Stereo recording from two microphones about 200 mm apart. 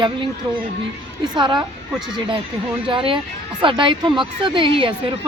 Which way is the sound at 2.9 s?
25° right (ahead or behind).